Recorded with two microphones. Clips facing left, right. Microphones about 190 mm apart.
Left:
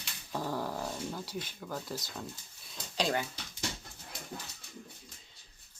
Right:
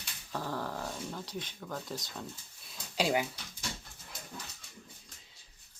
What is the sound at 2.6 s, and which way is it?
Speech, 10° right (ahead or behind).